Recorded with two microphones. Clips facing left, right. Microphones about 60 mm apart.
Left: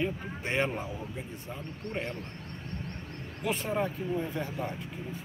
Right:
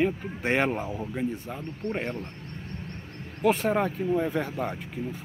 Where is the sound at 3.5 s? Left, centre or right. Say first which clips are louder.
Right 5 dB; right.